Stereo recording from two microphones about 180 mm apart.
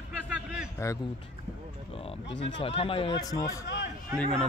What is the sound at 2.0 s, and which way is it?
Speech, 30° left (ahead or behind).